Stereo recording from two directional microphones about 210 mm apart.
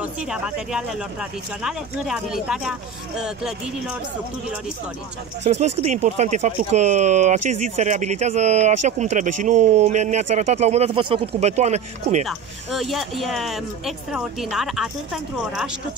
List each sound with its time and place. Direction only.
0.0 s speech: 5° right (ahead or behind)
5.4 s speech: 30° right (ahead or behind)
12.3 s speech: centre (ahead or behind)